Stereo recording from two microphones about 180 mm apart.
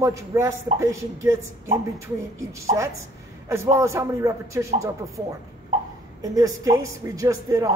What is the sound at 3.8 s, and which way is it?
A man's voice, 15° right (ahead or behind).